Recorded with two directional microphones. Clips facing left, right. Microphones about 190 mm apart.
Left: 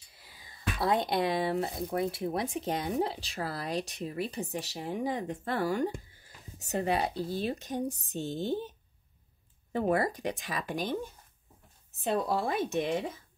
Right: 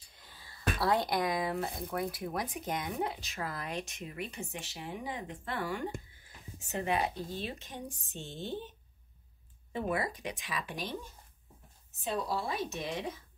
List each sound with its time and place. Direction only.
0.1 s a sound: 10° left (ahead or behind)
0.7 s speech: 20° left (ahead or behind); by 11.0 s 45° left (ahead or behind)
12.0 s speech: 55° left (ahead or behind)